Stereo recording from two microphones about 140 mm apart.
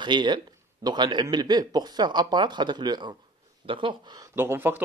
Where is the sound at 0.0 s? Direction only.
35° right (ahead or behind).